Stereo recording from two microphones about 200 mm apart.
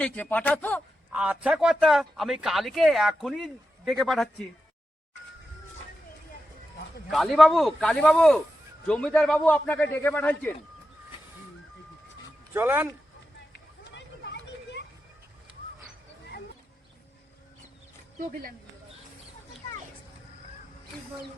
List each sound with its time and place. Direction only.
0.0 s a man's voice: 5° left (ahead or behind)
1.1 s speech: 5° right (ahead or behind)
7.1 s a man's voice: centre (ahead or behind)
12.5 s speech: 10° right (ahead or behind)
13.5 s hubbub: 60° left (ahead or behind)